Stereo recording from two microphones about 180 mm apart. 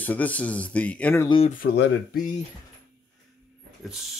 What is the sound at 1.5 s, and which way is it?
Speech, 50° left (ahead or behind).